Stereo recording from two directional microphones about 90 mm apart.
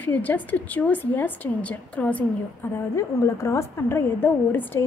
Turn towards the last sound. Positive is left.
turn(degrees=25)  # may be behind; listen again after turning